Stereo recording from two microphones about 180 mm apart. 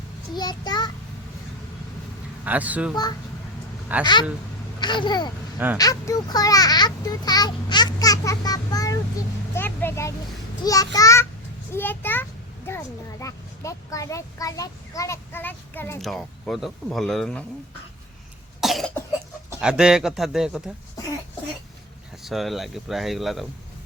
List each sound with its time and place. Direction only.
0.3 s a child's voice: 25° left (ahead or behind)
2.4 s speech: 10° right (ahead or behind)
2.9 s a child's voice: 25° left (ahead or behind)
16.0 s speech: centre (ahead or behind)
18.6 s cough: centre (ahead or behind)
19.5 s speech: 5° right (ahead or behind)
22.2 s speech: centre (ahead or behind)